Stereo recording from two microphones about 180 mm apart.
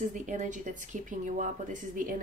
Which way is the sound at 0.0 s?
45° right (ahead or behind).